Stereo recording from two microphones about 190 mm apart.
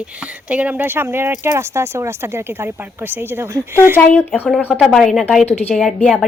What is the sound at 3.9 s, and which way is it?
A woman's voice, 10° left (ahead or behind).